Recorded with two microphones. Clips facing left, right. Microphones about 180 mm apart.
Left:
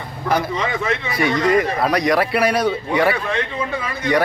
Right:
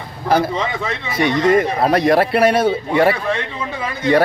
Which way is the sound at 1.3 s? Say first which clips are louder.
Right 3 dB; 25° right (ahead or behind).